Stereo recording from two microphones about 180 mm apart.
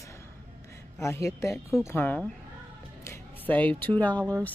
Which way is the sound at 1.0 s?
15° left (ahead or behind).